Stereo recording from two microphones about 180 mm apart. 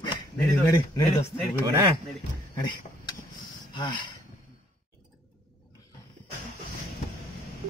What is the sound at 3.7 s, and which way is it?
Speech, 25° left (ahead or behind).